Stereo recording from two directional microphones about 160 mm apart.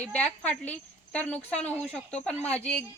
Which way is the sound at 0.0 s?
5° left (ahead or behind).